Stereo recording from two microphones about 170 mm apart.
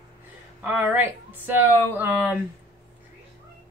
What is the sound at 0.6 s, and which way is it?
Speech, 10° right (ahead or behind).